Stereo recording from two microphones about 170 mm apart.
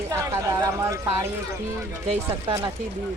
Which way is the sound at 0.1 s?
20° right (ahead or behind).